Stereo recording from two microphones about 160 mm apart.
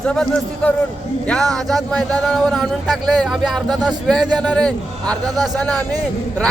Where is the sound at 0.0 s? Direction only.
5° left (ahead or behind).